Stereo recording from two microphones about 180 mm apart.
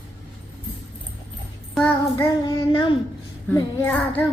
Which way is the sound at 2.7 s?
30° left (ahead or behind).